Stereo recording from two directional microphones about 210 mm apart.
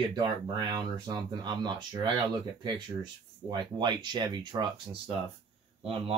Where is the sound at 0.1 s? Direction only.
20° right (ahead or behind).